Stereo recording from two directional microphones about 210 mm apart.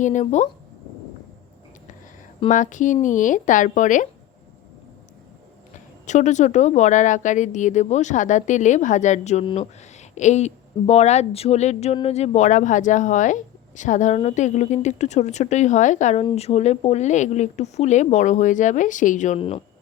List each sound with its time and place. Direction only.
0.0 s speech: 35° left (ahead or behind)
2.5 s speech: 35° left (ahead or behind)
6.1 s speech: 35° left (ahead or behind)